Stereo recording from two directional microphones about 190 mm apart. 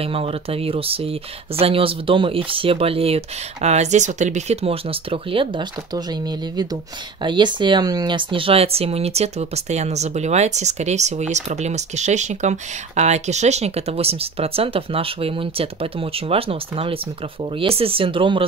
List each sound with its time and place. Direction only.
0.0 s speech: 30° right (ahead or behind)
7.2 s speech: 25° right (ahead or behind)